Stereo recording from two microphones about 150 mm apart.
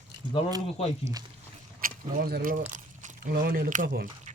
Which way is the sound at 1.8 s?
70° right (ahead or behind).